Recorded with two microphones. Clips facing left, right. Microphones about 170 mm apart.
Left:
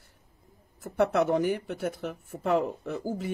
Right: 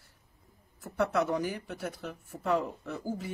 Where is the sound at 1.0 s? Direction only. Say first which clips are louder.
Left 4 dB; 55° left (ahead or behind).